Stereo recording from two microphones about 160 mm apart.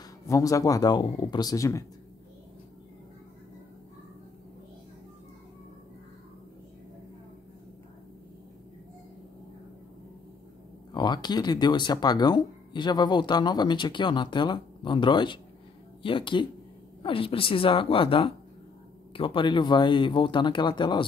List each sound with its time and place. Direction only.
0.3 s speech: 20° left (ahead or behind)
10.9 s speech: 25° left (ahead or behind)